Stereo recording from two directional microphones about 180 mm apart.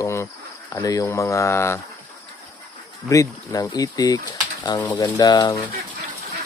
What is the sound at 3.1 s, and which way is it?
Speech, 20° left (ahead or behind).